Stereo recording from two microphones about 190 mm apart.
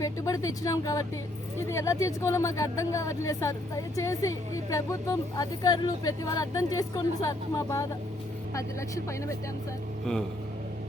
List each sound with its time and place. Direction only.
0.0 s speech: 15° left (ahead or behind)